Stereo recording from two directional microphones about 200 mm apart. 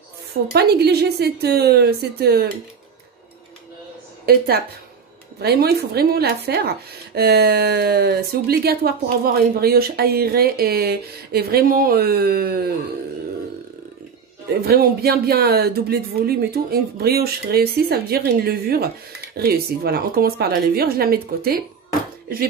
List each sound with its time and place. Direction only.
0.5 s speech: 55° right (ahead or behind)
4.3 s speech: 50° right (ahead or behind)
14.6 s speech: 50° right (ahead or behind)